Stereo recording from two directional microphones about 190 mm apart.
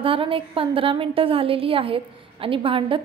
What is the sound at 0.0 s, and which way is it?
A woman's voice, 30° right (ahead or behind).